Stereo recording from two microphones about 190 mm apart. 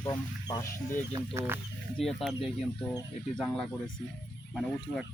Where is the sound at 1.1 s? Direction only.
15° right (ahead or behind).